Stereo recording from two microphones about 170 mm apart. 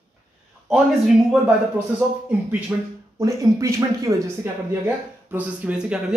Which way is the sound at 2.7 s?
5° right (ahead or behind).